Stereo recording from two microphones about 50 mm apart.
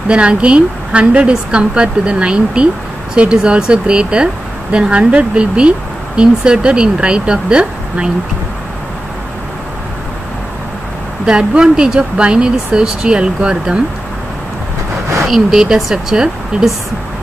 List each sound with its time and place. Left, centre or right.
0.1 s speech: right
11.2 s speech: centre
15.2 s speech: centre